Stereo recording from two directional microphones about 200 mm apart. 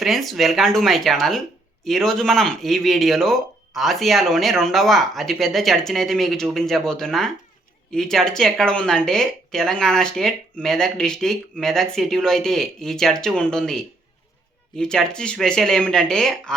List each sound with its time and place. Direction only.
0.0 s speech: centre (ahead or behind)